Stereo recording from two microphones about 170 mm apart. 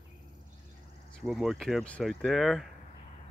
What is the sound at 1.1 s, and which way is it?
Speech, centre (ahead or behind).